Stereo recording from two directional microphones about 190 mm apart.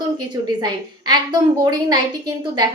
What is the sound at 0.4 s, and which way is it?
A woman's voice, 20° right (ahead or behind).